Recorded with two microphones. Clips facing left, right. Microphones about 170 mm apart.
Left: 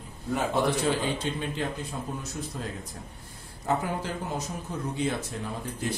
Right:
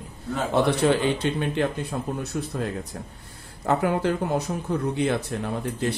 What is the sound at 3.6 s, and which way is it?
Speech, 65° right (ahead or behind).